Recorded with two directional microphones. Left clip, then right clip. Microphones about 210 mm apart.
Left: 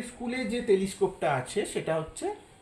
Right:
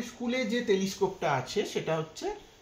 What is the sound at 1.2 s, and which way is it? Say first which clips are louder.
Speech: left 1 dB; 15° left (ahead or behind).